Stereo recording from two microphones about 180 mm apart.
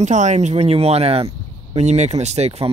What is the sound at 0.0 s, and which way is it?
Speech, 40° right (ahead or behind).